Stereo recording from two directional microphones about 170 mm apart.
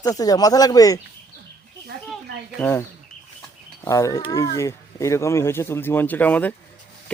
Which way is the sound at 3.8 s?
20° left (ahead or behind).